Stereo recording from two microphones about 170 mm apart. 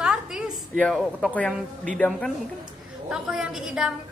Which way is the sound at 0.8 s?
Centre (ahead or behind).